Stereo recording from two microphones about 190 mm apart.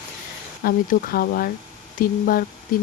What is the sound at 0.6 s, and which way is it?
Speech, 50° left (ahead or behind).